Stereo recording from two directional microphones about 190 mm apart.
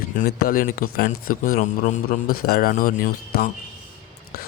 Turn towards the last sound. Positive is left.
turn(degrees=50)  # may be behind; listen again after turning